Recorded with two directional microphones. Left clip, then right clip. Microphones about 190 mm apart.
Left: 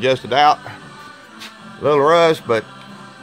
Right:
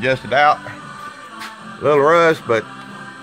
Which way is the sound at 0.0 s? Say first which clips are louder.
Left 1 dB; 35° left (ahead or behind).